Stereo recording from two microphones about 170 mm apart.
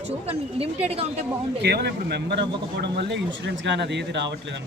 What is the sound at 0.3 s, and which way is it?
Speech, 35° right (ahead or behind).